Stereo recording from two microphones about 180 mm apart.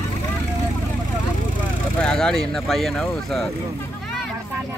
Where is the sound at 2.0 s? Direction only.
5° left (ahead or behind).